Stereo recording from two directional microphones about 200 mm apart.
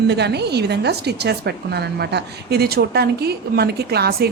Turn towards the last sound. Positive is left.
turn(degrees=-55)  # may be behind; listen again after turning